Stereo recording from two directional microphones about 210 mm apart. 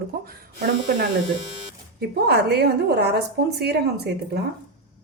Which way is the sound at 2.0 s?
50° right (ahead or behind).